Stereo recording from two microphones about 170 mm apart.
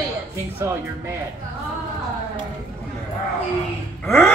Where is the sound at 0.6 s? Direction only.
15° right (ahead or behind).